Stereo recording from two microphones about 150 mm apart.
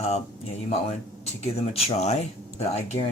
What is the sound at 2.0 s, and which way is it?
Speech, 45° left (ahead or behind).